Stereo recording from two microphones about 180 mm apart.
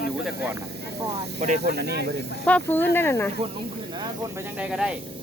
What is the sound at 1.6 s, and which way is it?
Speech, 65° right (ahead or behind).